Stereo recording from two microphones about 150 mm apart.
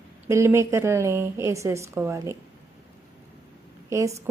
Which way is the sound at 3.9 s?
20° right (ahead or behind).